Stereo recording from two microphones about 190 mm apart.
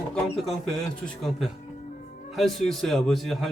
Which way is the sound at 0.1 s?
Centre (ahead or behind).